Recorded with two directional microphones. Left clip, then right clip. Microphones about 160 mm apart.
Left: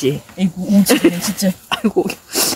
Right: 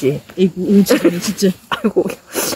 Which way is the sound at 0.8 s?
25° left (ahead or behind).